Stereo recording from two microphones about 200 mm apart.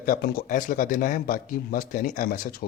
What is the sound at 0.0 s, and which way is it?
Speech, 45° left (ahead or behind).